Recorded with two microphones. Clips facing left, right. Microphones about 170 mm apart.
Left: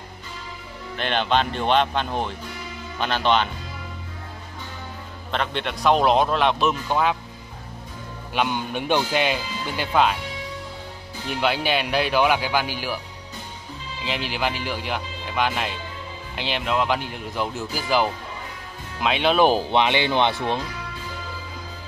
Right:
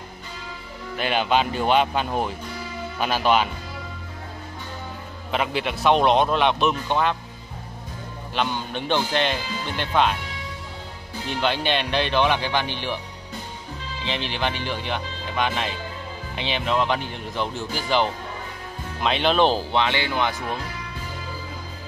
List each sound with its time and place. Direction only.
0.9 s speech: 5° right (ahead or behind)
5.3 s speech: 5° right (ahead or behind)
8.4 s speech: 10° left (ahead or behind)
11.4 s speech: 5° left (ahead or behind)
14.0 s speech: 5° left (ahead or behind); by 20.6 s 25° left (ahead or behind)